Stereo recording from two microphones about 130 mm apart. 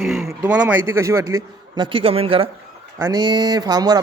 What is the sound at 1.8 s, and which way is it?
Speech, 45° right (ahead or behind).